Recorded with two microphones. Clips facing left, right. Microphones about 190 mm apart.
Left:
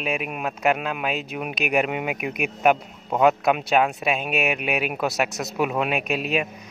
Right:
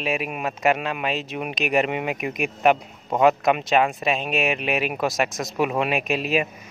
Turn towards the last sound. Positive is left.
turn(degrees=0)  # may be behind; listen again after turning